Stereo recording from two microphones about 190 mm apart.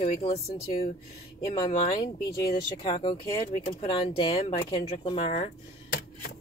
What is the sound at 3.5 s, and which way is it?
Speech, 50° left (ahead or behind).